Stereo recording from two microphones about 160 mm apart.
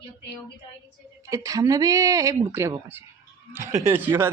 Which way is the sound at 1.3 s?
20° right (ahead or behind).